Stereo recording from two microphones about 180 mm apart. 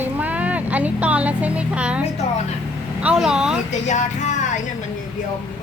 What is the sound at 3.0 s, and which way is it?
Speech, 5° right (ahead or behind).